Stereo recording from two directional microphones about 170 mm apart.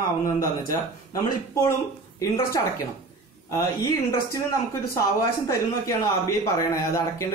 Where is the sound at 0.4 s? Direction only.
20° left (ahead or behind).